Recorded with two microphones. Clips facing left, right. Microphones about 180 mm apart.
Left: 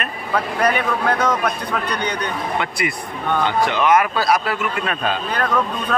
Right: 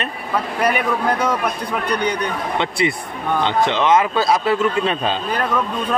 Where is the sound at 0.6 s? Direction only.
10° right (ahead or behind).